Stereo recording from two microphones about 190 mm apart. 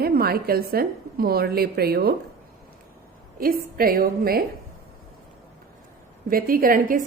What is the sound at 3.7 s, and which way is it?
Speech, 50° right (ahead or behind).